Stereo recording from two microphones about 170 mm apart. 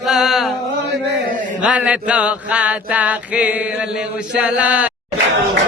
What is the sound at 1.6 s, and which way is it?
Chant, 5° right (ahead or behind).